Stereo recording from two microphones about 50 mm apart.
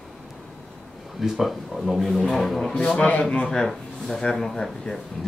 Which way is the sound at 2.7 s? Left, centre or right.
Left.